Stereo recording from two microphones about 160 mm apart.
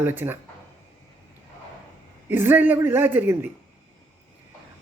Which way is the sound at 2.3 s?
15° right (ahead or behind).